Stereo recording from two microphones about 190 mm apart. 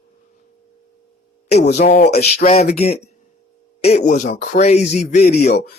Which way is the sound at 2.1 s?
35° left (ahead or behind).